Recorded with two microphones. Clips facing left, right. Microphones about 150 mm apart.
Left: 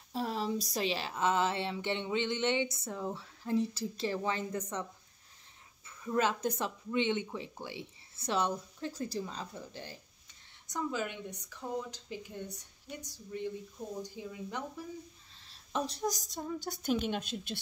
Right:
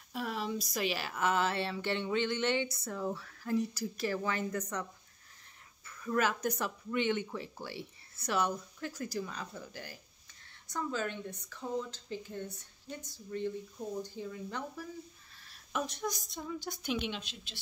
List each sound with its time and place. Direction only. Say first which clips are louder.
0.1 s speech: left 2 dB; 30° left (ahead or behind)
5.9 s speech: left 1 dB; 20° left (ahead or behind)
10.7 s speech: even; 15° left (ahead or behind)
15.4 s a woman's voice: left 1 dB; 30° left (ahead or behind); by 17.6 s 50° left (ahead or behind)